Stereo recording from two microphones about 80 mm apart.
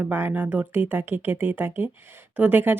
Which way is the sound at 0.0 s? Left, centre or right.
Right.